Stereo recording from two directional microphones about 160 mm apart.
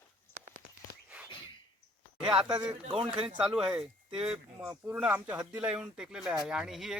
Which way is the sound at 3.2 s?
35° right (ahead or behind).